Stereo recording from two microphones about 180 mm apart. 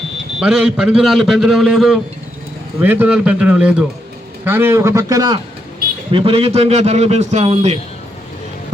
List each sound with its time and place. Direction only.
0.3 s a man's voice: 5° right (ahead or behind); by 5.4 s 20° right (ahead or behind)
6.1 s a man's voice: 30° right (ahead or behind)